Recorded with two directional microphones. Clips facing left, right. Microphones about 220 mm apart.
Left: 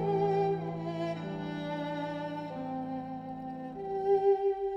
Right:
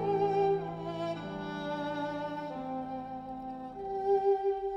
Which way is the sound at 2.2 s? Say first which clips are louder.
Even; centre (ahead or behind).